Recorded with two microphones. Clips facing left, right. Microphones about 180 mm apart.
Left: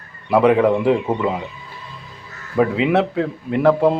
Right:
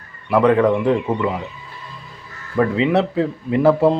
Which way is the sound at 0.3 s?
10° left (ahead or behind).